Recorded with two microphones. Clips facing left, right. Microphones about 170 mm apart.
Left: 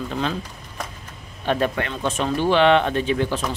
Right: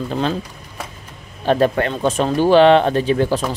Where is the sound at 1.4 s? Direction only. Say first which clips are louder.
Right 6 dB; 35° right (ahead or behind).